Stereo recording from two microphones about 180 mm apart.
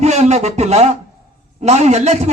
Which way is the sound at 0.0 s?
40° right (ahead or behind).